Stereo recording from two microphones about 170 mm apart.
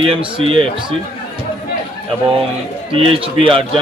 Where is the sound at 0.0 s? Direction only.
30° right (ahead or behind).